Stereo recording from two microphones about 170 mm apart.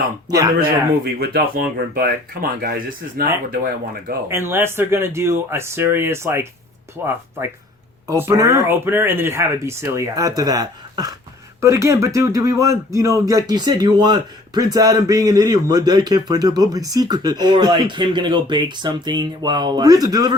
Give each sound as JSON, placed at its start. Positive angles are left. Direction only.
{"t": 0.3, "sound": "speech", "side_deg": -20}
{"t": 1.2, "sound": "speech", "side_deg": -65}
{"t": 4.3, "sound": "speech", "side_deg": -15}
{"t": 8.0, "sound": "speech", "side_deg": -15}